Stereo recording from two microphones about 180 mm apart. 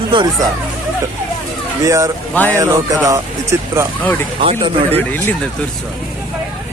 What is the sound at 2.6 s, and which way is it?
Speech, 20° right (ahead or behind).